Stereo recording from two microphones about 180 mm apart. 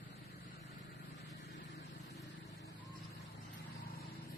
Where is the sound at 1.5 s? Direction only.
70° left (ahead or behind).